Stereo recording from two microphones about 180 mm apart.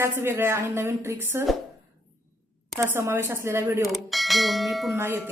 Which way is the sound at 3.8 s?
Centre (ahead or behind).